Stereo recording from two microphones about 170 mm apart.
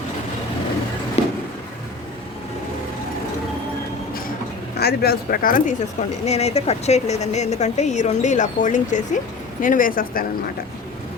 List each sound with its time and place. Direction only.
1.2 s a sound: 40° left (ahead or behind)
4.8 s speech: 65° left (ahead or behind)
6.2 s speech: 40° left (ahead or behind); by 10.2 s 55° left (ahead or behind)